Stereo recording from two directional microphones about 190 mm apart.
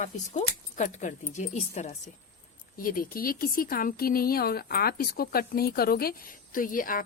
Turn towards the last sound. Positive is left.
turn(degrees=45)  # may be behind; listen again after turning